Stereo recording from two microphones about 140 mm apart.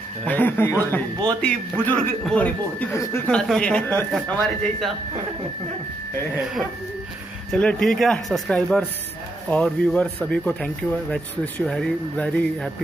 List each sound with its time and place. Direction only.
0.2 s speech: 10° left (ahead or behind)
2.9 s speech: 20° left (ahead or behind)
3.3 s speech: 5° left (ahead or behind)
7.5 s speech: 5° left (ahead or behind)